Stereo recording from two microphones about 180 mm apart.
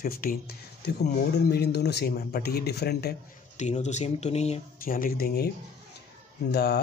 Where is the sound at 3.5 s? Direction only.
40° left (ahead or behind).